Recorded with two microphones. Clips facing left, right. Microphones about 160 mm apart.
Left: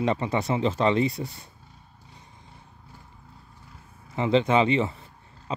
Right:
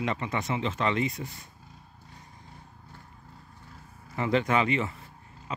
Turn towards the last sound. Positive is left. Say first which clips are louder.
# left 5 dB
turn(degrees=30)  # may be behind; listen again after turning